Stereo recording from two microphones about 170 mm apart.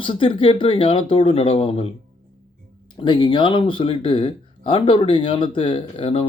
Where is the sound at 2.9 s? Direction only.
25° left (ahead or behind).